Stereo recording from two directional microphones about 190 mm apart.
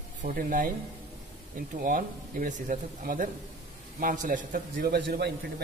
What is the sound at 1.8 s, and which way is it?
Speech, 45° right (ahead or behind).